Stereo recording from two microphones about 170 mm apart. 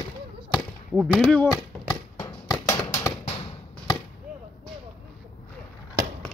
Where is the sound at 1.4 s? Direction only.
20° left (ahead or behind).